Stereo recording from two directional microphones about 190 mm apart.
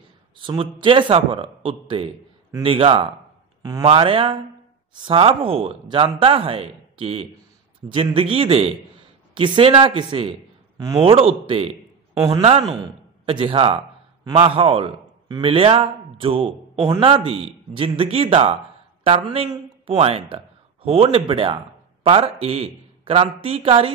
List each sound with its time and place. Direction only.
0.4 s a man's voice: 25° right (ahead or behind)